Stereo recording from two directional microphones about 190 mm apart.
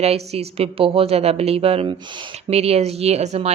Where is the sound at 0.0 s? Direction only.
35° right (ahead or behind).